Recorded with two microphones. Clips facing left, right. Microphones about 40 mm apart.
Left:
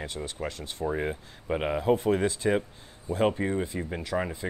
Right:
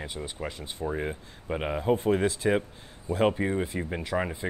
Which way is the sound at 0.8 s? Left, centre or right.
Centre.